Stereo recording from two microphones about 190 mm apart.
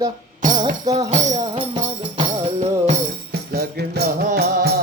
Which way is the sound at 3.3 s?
55° right (ahead or behind).